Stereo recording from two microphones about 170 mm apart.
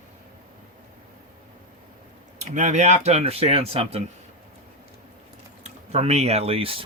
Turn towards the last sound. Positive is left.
turn(degrees=-35)  # may be behind; listen again after turning